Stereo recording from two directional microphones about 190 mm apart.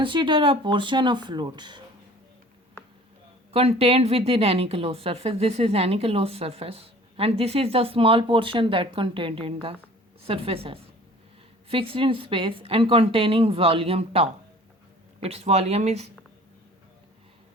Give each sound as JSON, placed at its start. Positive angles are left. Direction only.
{"t": 0.0, "sound": "a woman's voice", "side_deg": -25}
{"t": 3.5, "sound": "a woman's voice", "side_deg": -30}